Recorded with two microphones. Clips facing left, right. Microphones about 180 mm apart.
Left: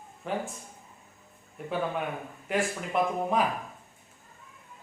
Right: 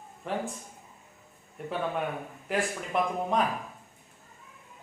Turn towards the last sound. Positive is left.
turn(degrees=0)  # may be behind; listen again after turning